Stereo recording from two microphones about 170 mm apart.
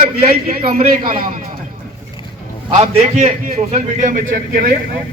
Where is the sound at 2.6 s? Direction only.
35° right (ahead or behind).